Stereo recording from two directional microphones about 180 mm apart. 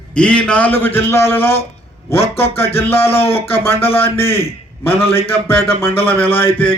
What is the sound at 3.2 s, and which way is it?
Speech, 30° left (ahead or behind).